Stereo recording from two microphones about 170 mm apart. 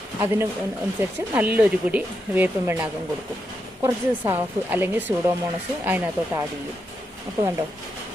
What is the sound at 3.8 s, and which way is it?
Speech, 15° right (ahead or behind).